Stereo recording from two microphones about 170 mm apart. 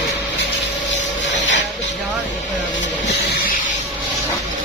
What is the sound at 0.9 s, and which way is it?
Rub, 90° left.